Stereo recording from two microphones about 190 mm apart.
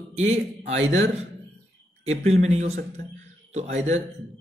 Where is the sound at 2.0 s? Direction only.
35° right (ahead or behind).